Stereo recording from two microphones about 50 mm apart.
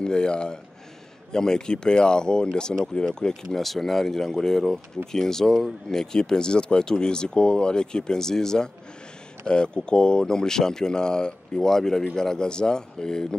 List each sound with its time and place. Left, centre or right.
0.0 s speech: centre